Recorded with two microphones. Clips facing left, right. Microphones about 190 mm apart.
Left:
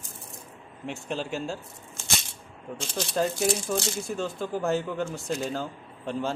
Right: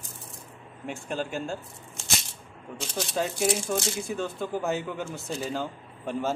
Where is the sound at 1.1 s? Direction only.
50° right (ahead or behind).